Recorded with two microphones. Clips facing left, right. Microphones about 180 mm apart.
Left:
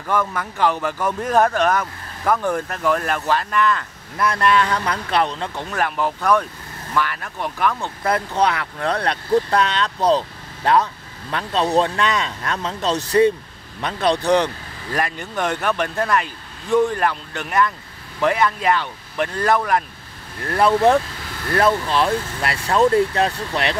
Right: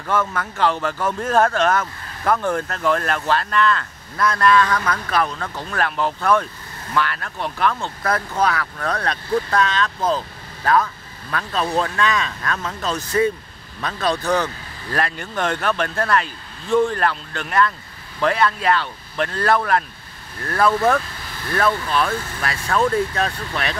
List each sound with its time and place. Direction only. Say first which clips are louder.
0.0 s speech: even; 5° left (ahead or behind); by 5.7 s 25° left (ahead or behind)
5.7 s speech: even; 10° left (ahead or behind)
8.1 s speech: left 1 dB; 25° left (ahead or behind)
9.9 s speech: left 7 dB; 35° left (ahead or behind)
10.6 s speech: left 1 dB; 25° left (ahead or behind)